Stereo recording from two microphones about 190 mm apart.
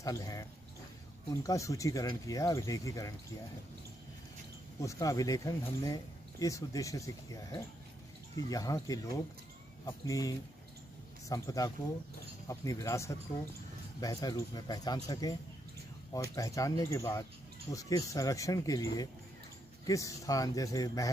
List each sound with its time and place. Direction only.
0.0 s speech: 20° left (ahead or behind)
4.8 s speech: 15° left (ahead or behind)